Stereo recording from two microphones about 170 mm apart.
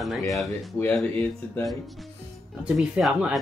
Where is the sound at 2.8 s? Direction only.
Centre (ahead or behind).